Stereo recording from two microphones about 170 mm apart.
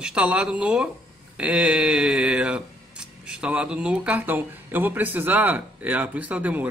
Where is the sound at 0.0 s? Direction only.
5° right (ahead or behind).